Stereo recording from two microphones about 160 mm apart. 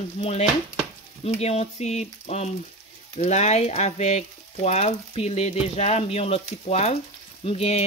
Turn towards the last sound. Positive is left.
turn(degrees=40)  # may be behind; listen again after turning